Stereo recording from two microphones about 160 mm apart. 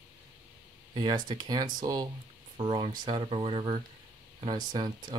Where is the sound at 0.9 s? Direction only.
25° right (ahead or behind).